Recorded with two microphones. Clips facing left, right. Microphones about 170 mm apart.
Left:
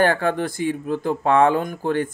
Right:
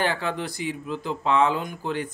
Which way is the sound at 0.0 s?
50° left (ahead or behind).